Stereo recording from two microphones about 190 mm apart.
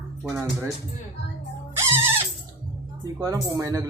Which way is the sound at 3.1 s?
15° right (ahead or behind).